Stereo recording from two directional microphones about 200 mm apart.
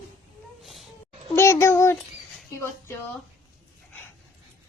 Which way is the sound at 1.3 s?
15° left (ahead or behind).